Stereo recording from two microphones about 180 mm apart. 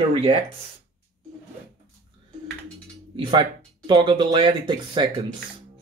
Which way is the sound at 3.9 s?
25° right (ahead or behind).